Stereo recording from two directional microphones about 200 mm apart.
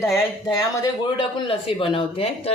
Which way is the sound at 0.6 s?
20° left (ahead or behind).